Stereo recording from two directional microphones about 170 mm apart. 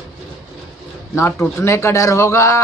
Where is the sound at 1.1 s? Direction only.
15° left (ahead or behind).